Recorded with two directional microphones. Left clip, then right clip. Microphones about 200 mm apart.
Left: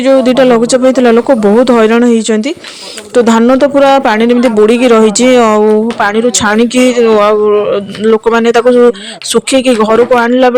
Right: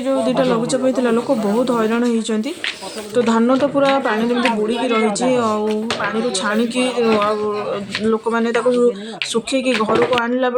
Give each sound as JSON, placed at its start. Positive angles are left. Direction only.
{"t": 0.0, "sound": "speech", "side_deg": 40}